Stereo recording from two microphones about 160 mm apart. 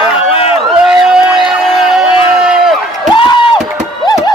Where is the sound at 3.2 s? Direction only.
30° left (ahead or behind).